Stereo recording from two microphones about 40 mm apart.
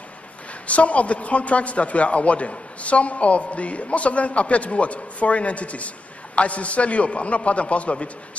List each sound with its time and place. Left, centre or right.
0.7 s a man's voice: left